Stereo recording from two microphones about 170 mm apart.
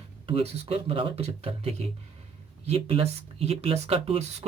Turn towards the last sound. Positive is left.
turn(degrees=-35)  # may be behind; listen again after turning